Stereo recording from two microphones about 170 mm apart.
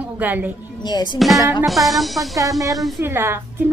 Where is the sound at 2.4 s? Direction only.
20° right (ahead or behind).